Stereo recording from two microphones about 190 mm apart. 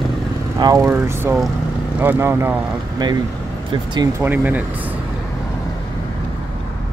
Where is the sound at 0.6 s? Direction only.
15° right (ahead or behind).